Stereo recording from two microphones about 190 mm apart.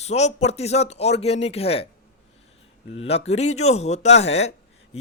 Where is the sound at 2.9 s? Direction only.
30° left (ahead or behind).